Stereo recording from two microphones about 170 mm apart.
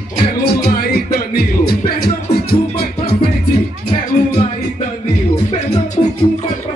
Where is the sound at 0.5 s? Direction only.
70° left (ahead or behind).